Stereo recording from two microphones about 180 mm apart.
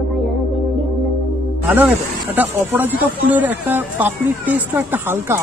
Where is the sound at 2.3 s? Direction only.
10° right (ahead or behind).